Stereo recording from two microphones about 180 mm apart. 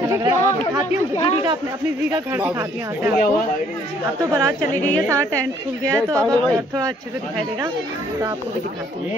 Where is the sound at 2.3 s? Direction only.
10° right (ahead or behind).